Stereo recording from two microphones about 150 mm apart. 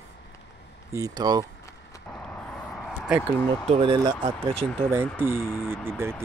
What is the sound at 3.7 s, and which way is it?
Speech, 35° right (ahead or behind).